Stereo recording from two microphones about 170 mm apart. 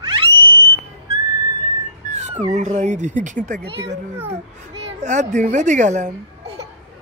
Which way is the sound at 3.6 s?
90° right.